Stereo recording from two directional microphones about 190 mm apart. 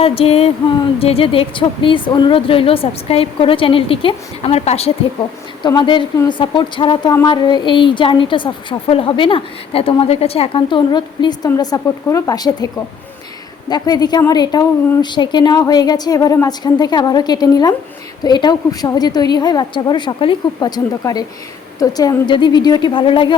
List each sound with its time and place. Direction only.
0.0 s a sound: 30° left (ahead or behind)
0.9 s a woman's voice: 30° left (ahead or behind)
5.6 s a woman's voice: 25° left (ahead or behind)